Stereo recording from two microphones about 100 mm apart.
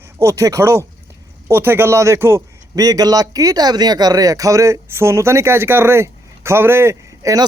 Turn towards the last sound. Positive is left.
turn(degrees=-35)  # may be behind; listen again after turning